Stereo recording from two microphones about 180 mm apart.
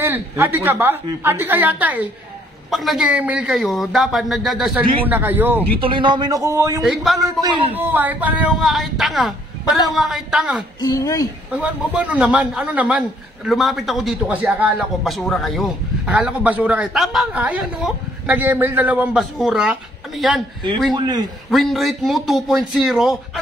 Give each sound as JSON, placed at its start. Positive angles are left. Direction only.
{"t": 0.0, "sound": "a man's voice", "side_deg": -10}
{"t": 5.8, "sound": "speech", "side_deg": -30}
{"t": 6.8, "sound": "a man's voice", "side_deg": 0}
{"t": 7.2, "sound": "speech", "side_deg": -20}
{"t": 7.7, "sound": "a man's voice", "side_deg": -10}
{"t": 10.8, "sound": "speech", "side_deg": 20}
{"t": 11.5, "sound": "a man's voice", "side_deg": -5}
{"t": 20.9, "sound": "speech", "side_deg": -25}
{"t": 21.5, "sound": "a man's voice", "side_deg": 0}